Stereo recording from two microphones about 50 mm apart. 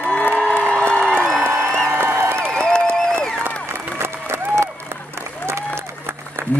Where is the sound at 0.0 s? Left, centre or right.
Left.